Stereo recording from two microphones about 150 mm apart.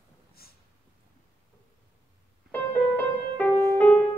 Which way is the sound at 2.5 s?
10° left (ahead or behind).